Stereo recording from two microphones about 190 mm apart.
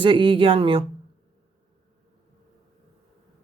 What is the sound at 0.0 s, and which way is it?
Speech, 25° right (ahead or behind).